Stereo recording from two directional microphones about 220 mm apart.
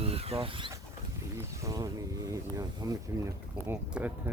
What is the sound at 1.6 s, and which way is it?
Speech, 15° right (ahead or behind).